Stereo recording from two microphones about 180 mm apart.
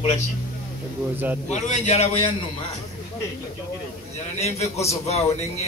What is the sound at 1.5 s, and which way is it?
Speech, 40° left (ahead or behind).